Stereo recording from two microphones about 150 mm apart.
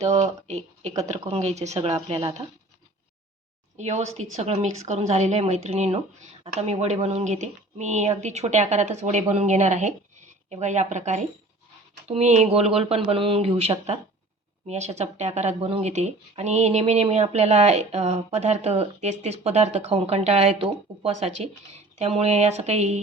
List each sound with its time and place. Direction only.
0.4 s speech: 45° right (ahead or behind)
3.8 s speech: 50° right (ahead or behind)